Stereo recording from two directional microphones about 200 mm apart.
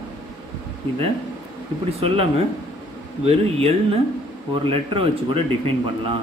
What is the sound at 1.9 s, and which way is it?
Speech, 30° right (ahead or behind).